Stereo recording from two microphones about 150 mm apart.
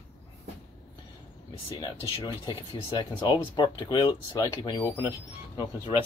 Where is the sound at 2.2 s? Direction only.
30° left (ahead or behind).